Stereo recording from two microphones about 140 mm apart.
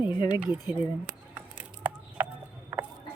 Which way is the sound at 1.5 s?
10° right (ahead or behind).